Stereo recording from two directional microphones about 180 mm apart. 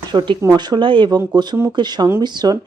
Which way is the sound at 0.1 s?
25° right (ahead or behind).